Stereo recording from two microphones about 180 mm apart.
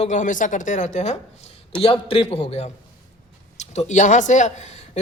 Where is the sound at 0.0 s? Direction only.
45° left (ahead or behind).